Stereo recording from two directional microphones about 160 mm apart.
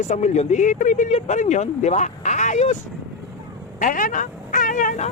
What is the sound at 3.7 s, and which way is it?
Speech, 55° left (ahead or behind).